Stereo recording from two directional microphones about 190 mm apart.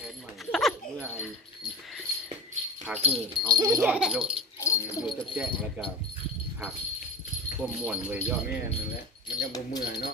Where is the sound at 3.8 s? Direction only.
5° right (ahead or behind).